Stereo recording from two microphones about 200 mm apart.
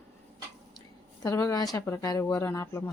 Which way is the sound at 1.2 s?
15° left (ahead or behind).